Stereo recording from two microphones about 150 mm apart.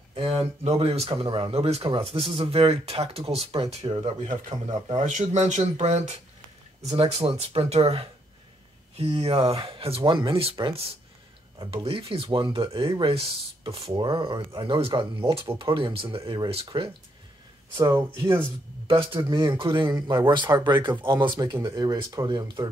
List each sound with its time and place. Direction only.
0.1 s speech: 40° right (ahead or behind)
4.9 s speech: 55° right (ahead or behind); by 16.9 s 35° right (ahead or behind)
17.7 s speech: 20° right (ahead or behind)
19.3 s speech: 30° right (ahead or behind)